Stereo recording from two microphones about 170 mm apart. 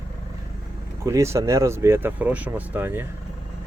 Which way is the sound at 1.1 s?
15° right (ahead or behind).